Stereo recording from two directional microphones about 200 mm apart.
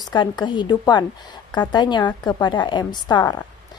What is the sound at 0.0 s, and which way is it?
A woman's voice, 20° left (ahead or behind).